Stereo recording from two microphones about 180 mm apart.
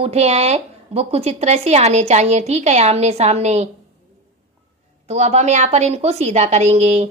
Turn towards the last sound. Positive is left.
turn(degrees=-35)  # may be behind; listen again after turning